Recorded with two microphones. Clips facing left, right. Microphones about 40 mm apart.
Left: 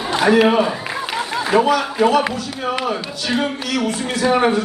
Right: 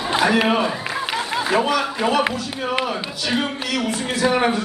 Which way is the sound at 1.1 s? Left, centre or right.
Centre.